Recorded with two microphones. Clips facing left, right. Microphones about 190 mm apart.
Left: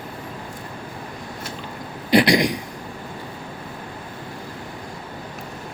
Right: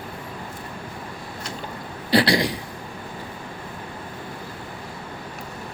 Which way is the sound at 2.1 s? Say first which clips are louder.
Left 3 dB; 15° left (ahead or behind).